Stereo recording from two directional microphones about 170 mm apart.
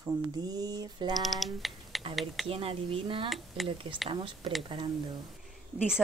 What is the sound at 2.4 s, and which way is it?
Speech, 35° right (ahead or behind).